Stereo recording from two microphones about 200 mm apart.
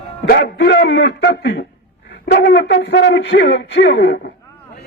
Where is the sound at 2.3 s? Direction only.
55° left (ahead or behind).